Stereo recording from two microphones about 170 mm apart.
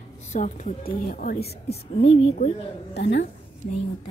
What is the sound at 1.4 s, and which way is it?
Speech, 35° left (ahead or behind).